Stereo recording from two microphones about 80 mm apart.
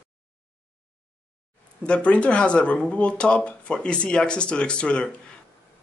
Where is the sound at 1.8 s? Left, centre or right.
Centre.